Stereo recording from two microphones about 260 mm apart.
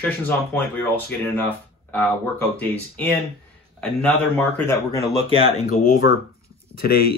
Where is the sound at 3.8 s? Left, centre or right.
Centre.